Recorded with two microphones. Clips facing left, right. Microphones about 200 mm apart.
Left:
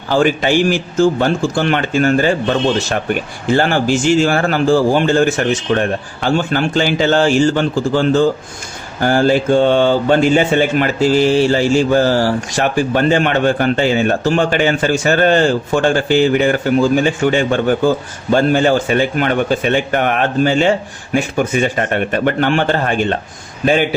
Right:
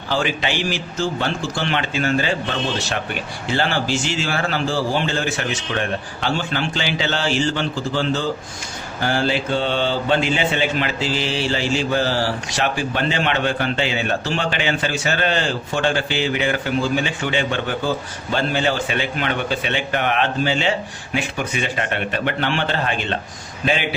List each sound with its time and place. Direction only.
0.1 s speech: 45° left (ahead or behind)